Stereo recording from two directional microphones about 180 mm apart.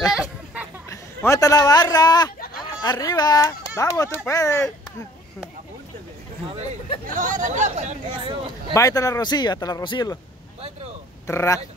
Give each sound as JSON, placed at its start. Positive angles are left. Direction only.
{"t": 0.1, "sound": "a sound", "side_deg": -5}
{"t": 0.8, "sound": "a man's voice", "side_deg": 15}
{"t": 7.2, "sound": "speech", "side_deg": -45}
{"t": 8.7, "sound": "speech", "side_deg": 20}
{"t": 11.2, "sound": "speech", "side_deg": 15}